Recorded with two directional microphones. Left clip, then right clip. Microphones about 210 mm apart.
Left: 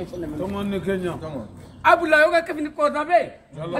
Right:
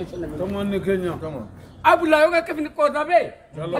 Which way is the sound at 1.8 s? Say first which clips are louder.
Even; 15° right (ahead or behind).